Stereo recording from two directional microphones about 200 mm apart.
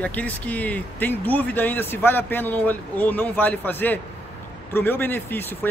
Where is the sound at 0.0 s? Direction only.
5° left (ahead or behind).